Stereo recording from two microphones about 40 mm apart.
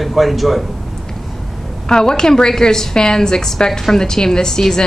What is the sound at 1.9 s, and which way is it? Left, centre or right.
A woman's voice, centre.